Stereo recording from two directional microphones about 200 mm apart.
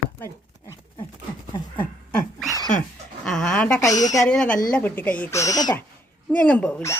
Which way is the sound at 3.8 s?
15° left (ahead or behind).